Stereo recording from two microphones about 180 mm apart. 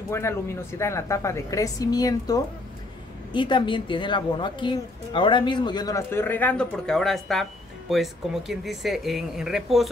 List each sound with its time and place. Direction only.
0.1 s a woman's voice: 15° left (ahead or behind); by 9.8 s centre (ahead or behind)